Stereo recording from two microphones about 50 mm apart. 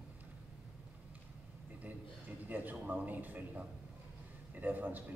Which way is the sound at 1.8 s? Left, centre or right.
Right.